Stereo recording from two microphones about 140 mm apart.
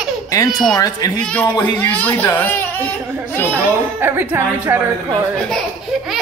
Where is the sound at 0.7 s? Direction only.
25° left (ahead or behind).